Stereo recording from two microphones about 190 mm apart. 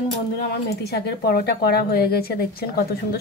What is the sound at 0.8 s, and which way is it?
Speech, 60° left (ahead or behind).